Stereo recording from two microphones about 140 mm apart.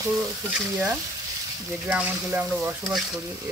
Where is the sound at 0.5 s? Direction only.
10° right (ahead or behind).